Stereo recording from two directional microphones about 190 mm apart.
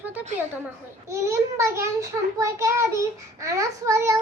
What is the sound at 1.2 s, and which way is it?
A child's voice, 15° right (ahead or behind).